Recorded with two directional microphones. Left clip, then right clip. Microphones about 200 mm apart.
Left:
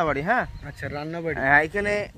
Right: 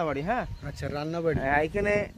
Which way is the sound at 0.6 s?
20° right (ahead or behind).